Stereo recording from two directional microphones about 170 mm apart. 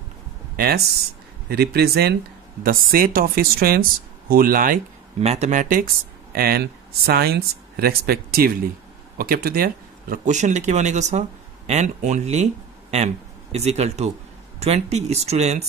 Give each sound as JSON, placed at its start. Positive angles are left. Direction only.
{"t": 1.5, "sound": "speech", "side_deg": -70}
{"t": 2.6, "sound": "speech", "side_deg": -60}
{"t": 5.2, "sound": "speech", "side_deg": -40}
{"t": 6.3, "sound": "a man's voice", "side_deg": -60}